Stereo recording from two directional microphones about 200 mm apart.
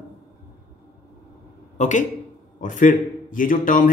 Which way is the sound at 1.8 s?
40° left (ahead or behind).